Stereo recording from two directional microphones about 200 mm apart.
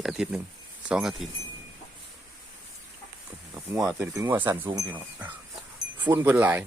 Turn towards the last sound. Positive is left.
turn(degrees=-10)  # may be behind; listen again after turning